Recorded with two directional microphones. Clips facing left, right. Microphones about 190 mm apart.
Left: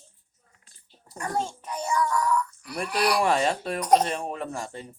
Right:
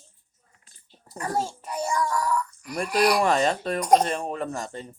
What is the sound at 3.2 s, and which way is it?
Speech, 5° left (ahead or behind).